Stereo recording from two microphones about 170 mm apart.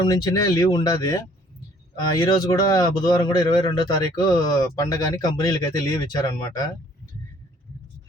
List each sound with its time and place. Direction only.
0.0 s speech: 25° left (ahead or behind)